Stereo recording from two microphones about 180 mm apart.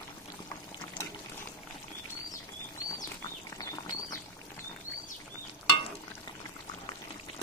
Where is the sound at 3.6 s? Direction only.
20° left (ahead or behind).